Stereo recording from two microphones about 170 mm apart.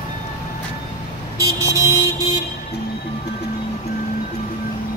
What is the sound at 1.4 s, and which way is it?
Vehicle, 20° right (ahead or behind).